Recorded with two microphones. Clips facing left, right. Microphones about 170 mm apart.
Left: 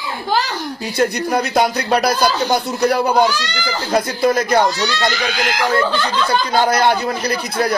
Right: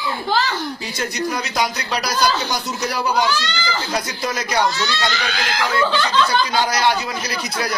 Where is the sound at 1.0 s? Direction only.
60° left (ahead or behind).